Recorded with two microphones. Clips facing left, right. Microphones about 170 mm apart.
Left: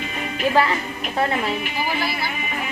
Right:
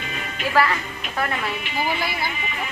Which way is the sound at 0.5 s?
20° left (ahead or behind).